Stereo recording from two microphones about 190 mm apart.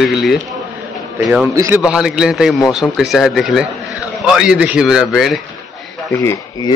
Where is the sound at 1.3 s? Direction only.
15° right (ahead or behind).